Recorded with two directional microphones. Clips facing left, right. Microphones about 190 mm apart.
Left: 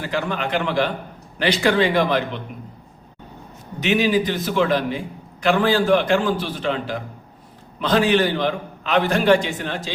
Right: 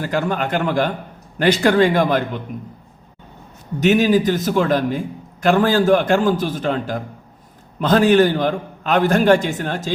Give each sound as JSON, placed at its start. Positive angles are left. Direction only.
{"t": 0.0, "sound": "a man's voice", "side_deg": -45}
{"t": 3.8, "sound": "a man's voice", "side_deg": -45}